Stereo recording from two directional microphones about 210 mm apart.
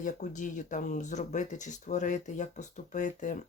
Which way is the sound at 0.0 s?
35° left (ahead or behind).